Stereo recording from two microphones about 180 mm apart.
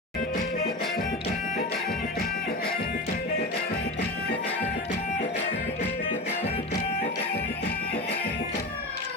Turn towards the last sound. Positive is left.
turn(degrees=40)  # may be behind; listen again after turning